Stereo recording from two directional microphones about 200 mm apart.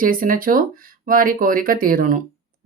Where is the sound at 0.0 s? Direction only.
45° right (ahead or behind).